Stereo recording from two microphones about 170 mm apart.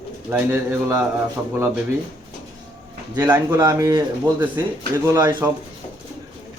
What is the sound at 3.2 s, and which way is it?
A man's voice, 15° right (ahead or behind).